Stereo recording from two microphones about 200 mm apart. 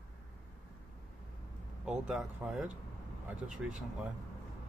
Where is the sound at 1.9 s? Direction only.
5° right (ahead or behind).